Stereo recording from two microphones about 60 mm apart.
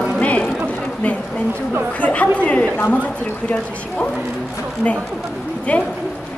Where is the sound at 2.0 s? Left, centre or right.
Left.